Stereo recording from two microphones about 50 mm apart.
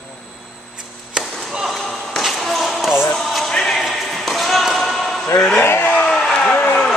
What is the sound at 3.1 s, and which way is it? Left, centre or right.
Music, centre.